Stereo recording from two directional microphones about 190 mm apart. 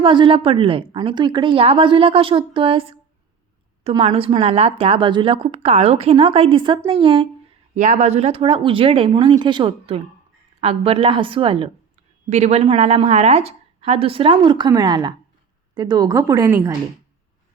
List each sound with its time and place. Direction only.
0.0 s a woman's voice: 25° right (ahead or behind)
7.8 s a woman's voice: 40° right (ahead or behind); by 16.7 s 10° right (ahead or behind)